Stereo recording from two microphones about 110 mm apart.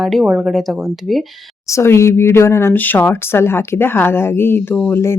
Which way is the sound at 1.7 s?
25° left (ahead or behind).